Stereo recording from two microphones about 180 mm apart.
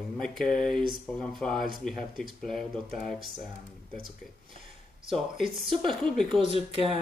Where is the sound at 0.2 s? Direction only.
5° left (ahead or behind).